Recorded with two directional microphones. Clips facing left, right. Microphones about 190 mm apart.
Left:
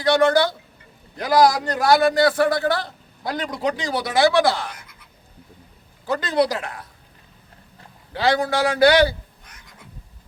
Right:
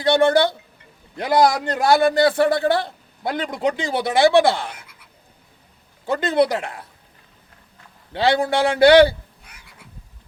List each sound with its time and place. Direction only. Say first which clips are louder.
0.0 s a man's voice: right 1 dB; 30° right (ahead or behind)
6.1 s a man's voice: right 2 dB; 25° right (ahead or behind)
8.1 s a man's voice: right 2 dB; 30° right (ahead or behind)
9.4 s frog: even; 10° right (ahead or behind)